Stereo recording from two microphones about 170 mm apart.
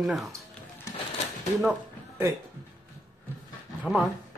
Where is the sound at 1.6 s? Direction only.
10° right (ahead or behind).